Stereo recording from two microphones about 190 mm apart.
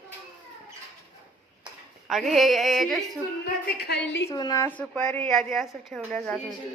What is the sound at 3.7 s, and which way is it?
Speech, 60° left (ahead or behind).